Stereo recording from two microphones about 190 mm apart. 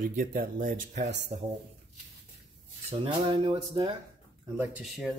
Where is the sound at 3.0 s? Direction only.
25° right (ahead or behind).